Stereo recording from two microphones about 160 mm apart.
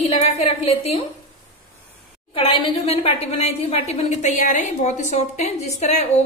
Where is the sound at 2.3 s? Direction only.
40° left (ahead or behind).